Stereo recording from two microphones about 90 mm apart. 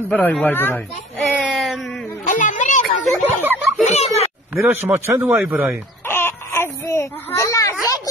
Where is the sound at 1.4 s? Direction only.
Centre (ahead or behind).